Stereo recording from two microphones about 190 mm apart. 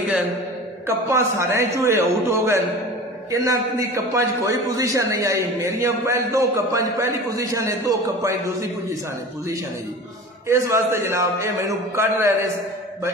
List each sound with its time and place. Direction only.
0.8 s a man's voice: 15° right (ahead or behind)
10.5 s a man's voice: 15° right (ahead or behind)